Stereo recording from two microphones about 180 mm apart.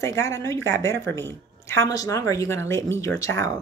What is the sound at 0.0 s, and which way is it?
A woman's voice, 15° left (ahead or behind).